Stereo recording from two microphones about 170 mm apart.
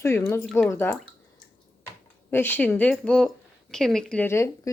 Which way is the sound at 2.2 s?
10° left (ahead or behind).